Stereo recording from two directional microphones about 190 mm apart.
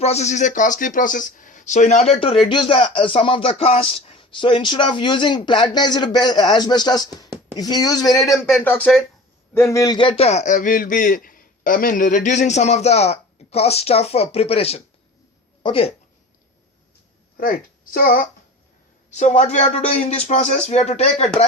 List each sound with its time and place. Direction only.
0.0 s a man's voice: 35° left (ahead or behind); by 8.4 s 15° left (ahead or behind)
8.4 s speech: 5° left (ahead or behind)
9.6 s a man's voice: 15° left (ahead or behind)
17.3 s a woman's voice: 50° left (ahead or behind)